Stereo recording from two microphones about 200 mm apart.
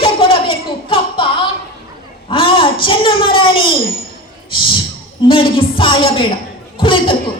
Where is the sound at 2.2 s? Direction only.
25° left (ahead or behind).